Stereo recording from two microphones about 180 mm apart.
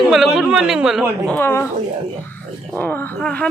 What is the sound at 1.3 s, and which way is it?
Speech, 15° left (ahead or behind).